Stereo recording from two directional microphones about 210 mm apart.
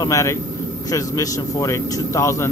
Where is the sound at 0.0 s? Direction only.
15° left (ahead or behind).